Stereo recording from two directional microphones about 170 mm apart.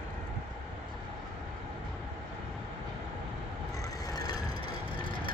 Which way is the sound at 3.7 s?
20° left (ahead or behind).